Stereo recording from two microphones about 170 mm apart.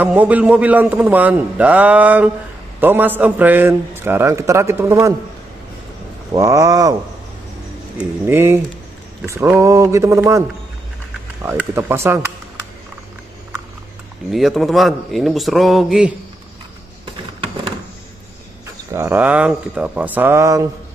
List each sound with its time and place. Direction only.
0.0 s a man's voice: 10° right (ahead or behind)
6.3 s speech: 20° right (ahead or behind)
8.0 s a man's voice: 15° right (ahead or behind)
11.4 s a man's voice: 15° right (ahead or behind)
14.3 s a man's voice: centre (ahead or behind)
18.9 s a man's voice: 15° right (ahead or behind)